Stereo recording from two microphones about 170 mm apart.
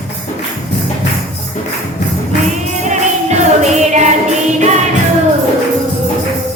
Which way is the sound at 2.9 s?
45° right (ahead or behind).